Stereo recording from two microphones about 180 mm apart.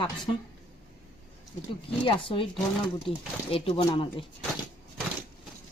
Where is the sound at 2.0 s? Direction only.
30° left (ahead or behind).